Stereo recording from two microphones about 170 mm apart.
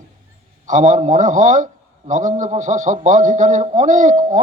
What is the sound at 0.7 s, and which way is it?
A man's voice, 45° right (ahead or behind).